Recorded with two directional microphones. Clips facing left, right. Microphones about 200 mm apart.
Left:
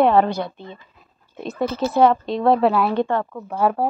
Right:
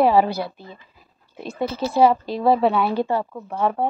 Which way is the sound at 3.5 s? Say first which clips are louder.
Left 2 dB; centre (ahead or behind).